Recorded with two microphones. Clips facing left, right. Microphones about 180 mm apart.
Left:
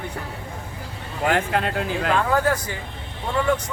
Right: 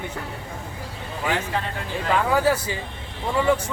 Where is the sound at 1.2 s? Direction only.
60° left (ahead or behind).